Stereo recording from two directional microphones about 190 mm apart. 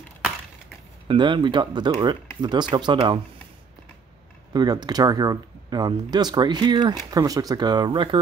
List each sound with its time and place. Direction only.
1.0 s speech: 25° right (ahead or behind)
4.5 s speech: 20° right (ahead or behind)